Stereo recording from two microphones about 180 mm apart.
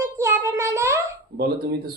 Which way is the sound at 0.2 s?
15° right (ahead or behind).